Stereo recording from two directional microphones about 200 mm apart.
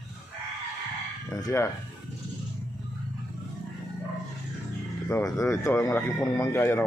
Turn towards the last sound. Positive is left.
turn(degrees=10)  # may be behind; listen again after turning